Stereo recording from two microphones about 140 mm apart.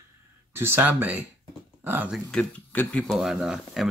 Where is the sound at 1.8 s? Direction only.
15° right (ahead or behind).